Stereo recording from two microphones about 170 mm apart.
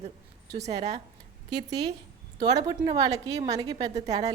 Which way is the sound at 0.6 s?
40° right (ahead or behind).